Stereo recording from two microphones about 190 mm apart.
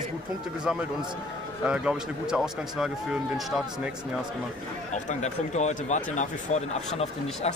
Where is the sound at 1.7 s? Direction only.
5° right (ahead or behind).